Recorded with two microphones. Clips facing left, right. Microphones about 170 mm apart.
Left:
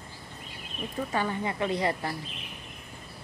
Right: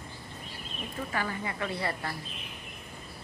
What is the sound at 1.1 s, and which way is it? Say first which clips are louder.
A woman's voice: left 4 dB; 20° left (ahead or behind).